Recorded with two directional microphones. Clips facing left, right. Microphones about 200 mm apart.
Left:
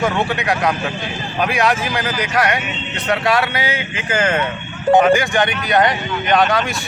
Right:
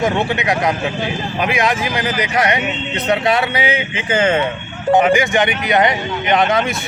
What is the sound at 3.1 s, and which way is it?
Speech, 20° right (ahead or behind).